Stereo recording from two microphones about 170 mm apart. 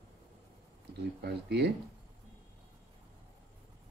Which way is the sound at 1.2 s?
80° right.